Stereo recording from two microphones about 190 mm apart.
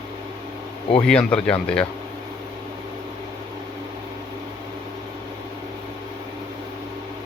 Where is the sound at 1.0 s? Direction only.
5° left (ahead or behind).